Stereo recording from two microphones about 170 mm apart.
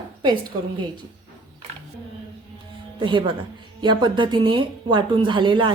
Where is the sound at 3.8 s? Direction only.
25° right (ahead or behind).